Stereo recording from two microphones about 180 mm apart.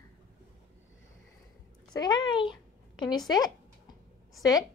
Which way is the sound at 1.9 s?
25° left (ahead or behind).